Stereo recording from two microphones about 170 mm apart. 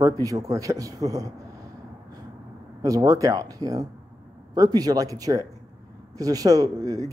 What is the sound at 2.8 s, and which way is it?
Speech, 20° right (ahead or behind).